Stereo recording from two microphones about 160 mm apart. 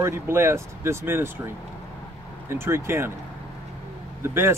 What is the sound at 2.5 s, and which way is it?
Speech, 15° right (ahead or behind).